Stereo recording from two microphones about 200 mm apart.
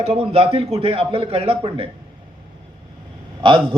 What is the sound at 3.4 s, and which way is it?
Speech, 25° right (ahead or behind).